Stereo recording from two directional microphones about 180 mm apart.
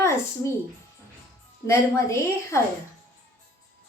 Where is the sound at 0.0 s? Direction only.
15° left (ahead or behind).